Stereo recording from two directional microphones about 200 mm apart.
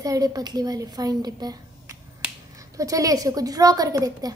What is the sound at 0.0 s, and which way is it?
A woman's voice, 15° right (ahead or behind).